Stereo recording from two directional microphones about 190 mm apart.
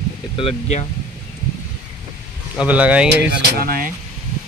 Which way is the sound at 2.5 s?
5° right (ahead or behind).